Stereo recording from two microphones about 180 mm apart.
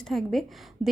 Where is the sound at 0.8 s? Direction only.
30° left (ahead or behind).